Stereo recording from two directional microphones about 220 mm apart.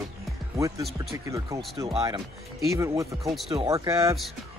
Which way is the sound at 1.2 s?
15° right (ahead or behind).